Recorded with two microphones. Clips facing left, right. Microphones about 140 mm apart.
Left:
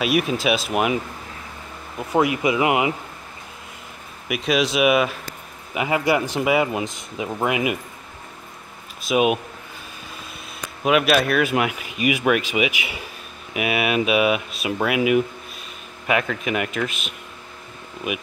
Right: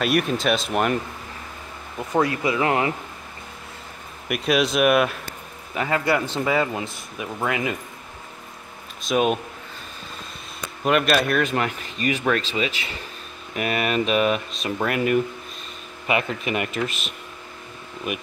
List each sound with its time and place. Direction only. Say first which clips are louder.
0.0 s speech: left 1 dB; 5° left (ahead or behind)
4.3 s speech: even; centre (ahead or behind)
5.8 s speech: left 2 dB; 15° left (ahead or behind)
9.0 s speech: left 2 dB; 10° left (ahead or behind)
10.8 s speech: left 2 dB; 5° left (ahead or behind)
16.4 s speech: left 1 dB; centre (ahead or behind)